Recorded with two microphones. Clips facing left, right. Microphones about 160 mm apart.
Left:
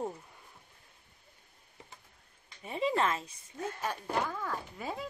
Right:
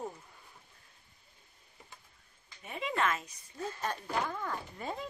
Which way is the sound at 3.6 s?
10° left (ahead or behind).